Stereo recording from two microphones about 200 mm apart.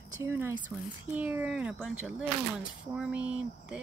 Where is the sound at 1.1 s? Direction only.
10° right (ahead or behind).